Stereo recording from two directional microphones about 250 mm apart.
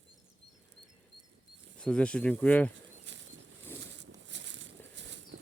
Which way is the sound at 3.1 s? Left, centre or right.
Right.